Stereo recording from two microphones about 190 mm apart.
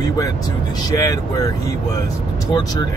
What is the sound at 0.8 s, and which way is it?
Speech, 20° left (ahead or behind).